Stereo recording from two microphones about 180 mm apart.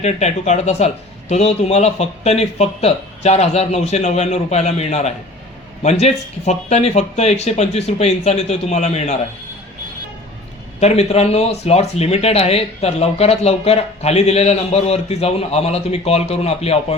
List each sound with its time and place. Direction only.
0.0 s a man's voice: 40° left (ahead or behind)
10.8 s a man's voice: 35° left (ahead or behind)